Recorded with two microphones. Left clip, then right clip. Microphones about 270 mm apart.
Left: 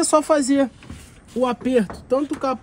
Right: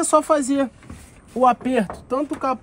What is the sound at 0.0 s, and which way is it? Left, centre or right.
Speech, centre.